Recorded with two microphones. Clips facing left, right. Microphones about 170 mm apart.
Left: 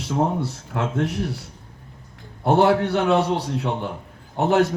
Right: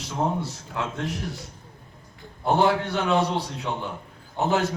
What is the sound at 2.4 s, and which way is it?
A man's voice, 65° left (ahead or behind).